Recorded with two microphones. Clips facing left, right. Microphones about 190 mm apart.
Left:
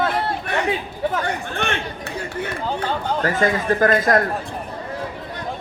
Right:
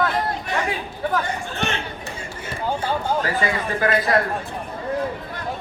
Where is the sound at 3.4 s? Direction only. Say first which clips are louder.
Left 5 dB; 45° left (ahead or behind).